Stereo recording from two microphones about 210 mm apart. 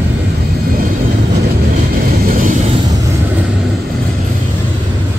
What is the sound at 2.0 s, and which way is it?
Vehicle, 45° right (ahead or behind).